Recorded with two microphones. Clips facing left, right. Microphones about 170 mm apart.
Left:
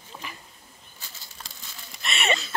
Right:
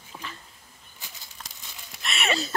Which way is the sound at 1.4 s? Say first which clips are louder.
Left 1 dB; 5° left (ahead or behind).